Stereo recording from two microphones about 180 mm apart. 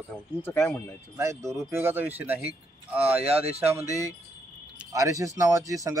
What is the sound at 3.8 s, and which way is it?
Speech, 20° left (ahead or behind).